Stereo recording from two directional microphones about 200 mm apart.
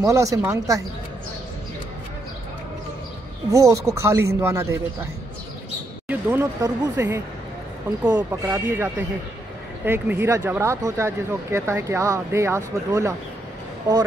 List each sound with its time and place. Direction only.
0.0 s speech: 15° right (ahead or behind)
3.5 s speech: 15° right (ahead or behind)
6.0 s speech: 10° right (ahead or behind)